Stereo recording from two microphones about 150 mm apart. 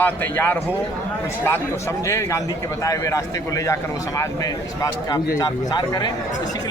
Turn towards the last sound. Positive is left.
turn(degrees=30)  # may be behind; listen again after turning